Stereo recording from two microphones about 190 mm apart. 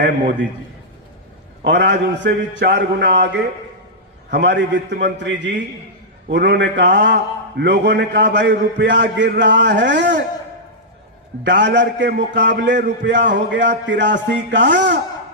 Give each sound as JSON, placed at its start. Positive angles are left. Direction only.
{"t": 0.0, "sound": "a man's voice", "side_deg": -65}
{"t": 1.6, "sound": "a man's voice", "side_deg": -65}
{"t": 4.3, "sound": "a man's voice", "side_deg": -65}
{"t": 11.4, "sound": "a man's voice", "side_deg": -70}